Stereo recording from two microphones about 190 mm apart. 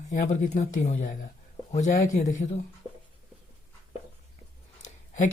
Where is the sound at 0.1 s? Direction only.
40° left (ahead or behind).